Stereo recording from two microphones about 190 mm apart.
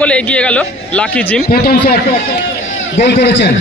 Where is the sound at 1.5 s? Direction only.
55° left (ahead or behind).